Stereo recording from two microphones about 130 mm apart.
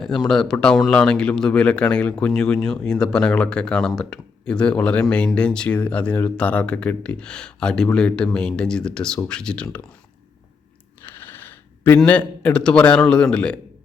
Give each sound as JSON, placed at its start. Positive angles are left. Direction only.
{"t": 0.0, "sound": "speech", "side_deg": 5}
{"t": 11.0, "sound": "a sound", "side_deg": 15}
{"t": 11.9, "sound": "speech", "side_deg": 10}